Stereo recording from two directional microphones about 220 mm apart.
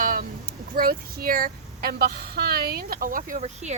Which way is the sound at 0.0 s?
40° right (ahead or behind).